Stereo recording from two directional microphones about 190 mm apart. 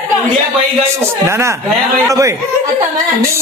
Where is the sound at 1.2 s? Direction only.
15° right (ahead or behind).